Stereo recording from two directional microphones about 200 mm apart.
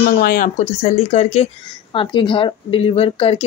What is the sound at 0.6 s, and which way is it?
Speech, 30° left (ahead or behind).